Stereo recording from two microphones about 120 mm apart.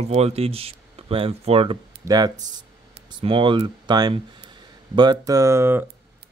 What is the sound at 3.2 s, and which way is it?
Speech, 45° right (ahead or behind).